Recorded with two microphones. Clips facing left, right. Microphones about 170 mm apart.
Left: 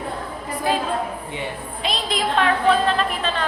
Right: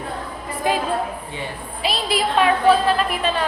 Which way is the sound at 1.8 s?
5° right (ahead or behind).